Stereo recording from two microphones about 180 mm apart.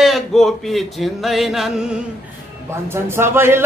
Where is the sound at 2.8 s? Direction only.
15° right (ahead or behind).